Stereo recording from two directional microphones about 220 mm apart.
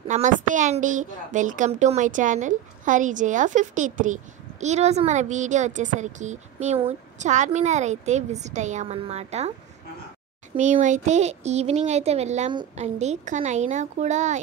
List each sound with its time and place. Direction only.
0.1 s a woman's voice: 35° right (ahead or behind)
10.5 s a woman's voice: 35° right (ahead or behind)